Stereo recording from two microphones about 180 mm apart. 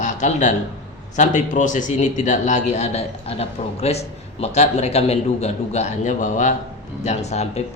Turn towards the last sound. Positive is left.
turn(degrees=40)  # may be behind; listen again after turning